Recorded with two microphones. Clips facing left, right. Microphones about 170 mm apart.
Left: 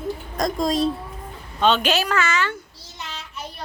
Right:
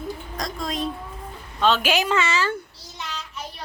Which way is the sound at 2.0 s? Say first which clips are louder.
Even; 25° right (ahead or behind).